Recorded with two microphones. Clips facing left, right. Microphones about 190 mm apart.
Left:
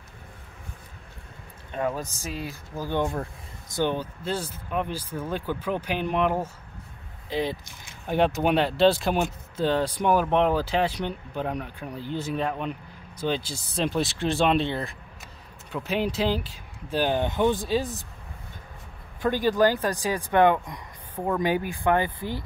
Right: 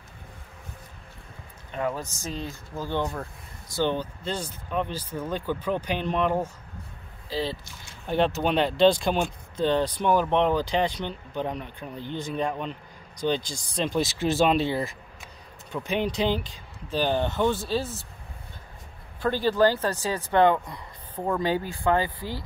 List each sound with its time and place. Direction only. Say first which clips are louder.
1.8 s speech: left 1 dB; 15° left (ahead or behind)
7.2 s speech: left 2 dB; 20° left (ahead or behind); by 15.0 s 5° right (ahead or behind)
15.7 s speech: even; 5° left (ahead or behind)
19.2 s speech: even; 15° left (ahead or behind)